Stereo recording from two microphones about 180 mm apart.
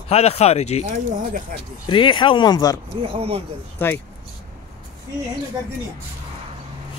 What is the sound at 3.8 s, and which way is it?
Speech, 10° left (ahead or behind).